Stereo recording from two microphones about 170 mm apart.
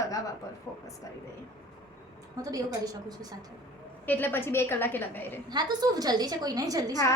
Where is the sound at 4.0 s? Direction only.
10° left (ahead or behind).